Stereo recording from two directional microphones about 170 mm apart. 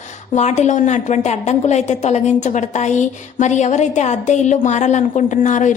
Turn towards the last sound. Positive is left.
turn(degrees=45)  # may be behind; listen again after turning